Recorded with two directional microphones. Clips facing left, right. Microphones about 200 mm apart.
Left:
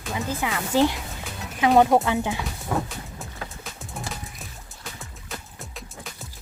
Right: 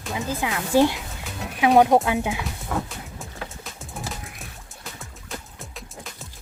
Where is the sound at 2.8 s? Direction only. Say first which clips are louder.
Even; centre (ahead or behind).